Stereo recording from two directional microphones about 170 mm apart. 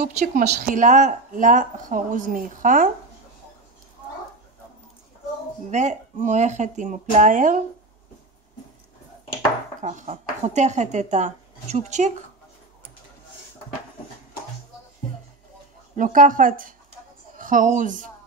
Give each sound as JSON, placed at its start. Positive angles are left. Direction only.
{"t": 0.0, "sound": "speech", "side_deg": -50}
{"t": 5.7, "sound": "speech", "side_deg": -45}
{"t": 9.8, "sound": "speech", "side_deg": -45}
{"t": 16.0, "sound": "a woman's voice", "side_deg": -50}